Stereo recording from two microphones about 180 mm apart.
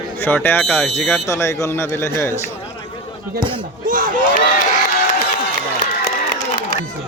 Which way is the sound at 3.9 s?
50° right (ahead or behind).